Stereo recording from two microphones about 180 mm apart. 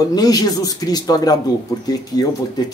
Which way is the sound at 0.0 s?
20° left (ahead or behind).